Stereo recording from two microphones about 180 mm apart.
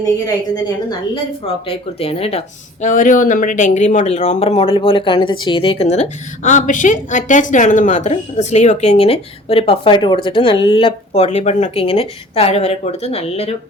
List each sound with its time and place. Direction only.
0.0 s a woman's voice: 20° left (ahead or behind)
2.8 s speech: 45° left (ahead or behind)